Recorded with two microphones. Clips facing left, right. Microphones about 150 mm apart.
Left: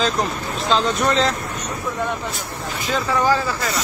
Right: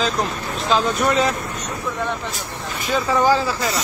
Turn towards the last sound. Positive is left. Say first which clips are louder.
# right 2 dB
turn(degrees=-15)  # may be behind; listen again after turning